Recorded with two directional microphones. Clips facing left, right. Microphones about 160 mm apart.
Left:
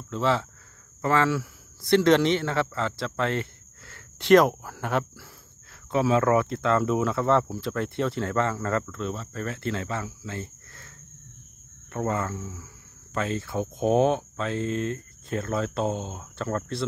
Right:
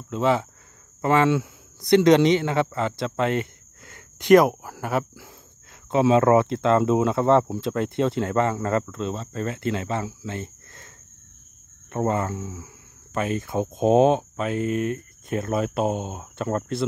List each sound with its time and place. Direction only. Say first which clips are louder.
0.1 s a man's voice: right 3 dB; 15° right (ahead or behind)
5.9 s speech: right 4 dB; 20° right (ahead or behind)
11.9 s speech: right 4 dB; 25° right (ahead or behind)